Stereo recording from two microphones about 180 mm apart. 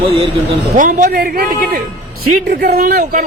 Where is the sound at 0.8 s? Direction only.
50° right (ahead or behind).